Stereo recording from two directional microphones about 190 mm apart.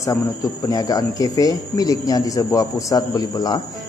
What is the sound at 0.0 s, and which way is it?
Speech, 15° left (ahead or behind).